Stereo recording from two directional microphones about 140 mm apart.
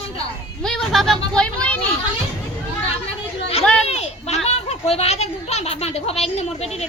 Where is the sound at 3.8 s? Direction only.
50° left (ahead or behind).